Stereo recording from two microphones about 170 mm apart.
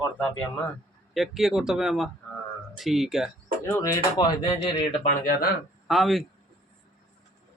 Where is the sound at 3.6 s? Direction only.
15° left (ahead or behind).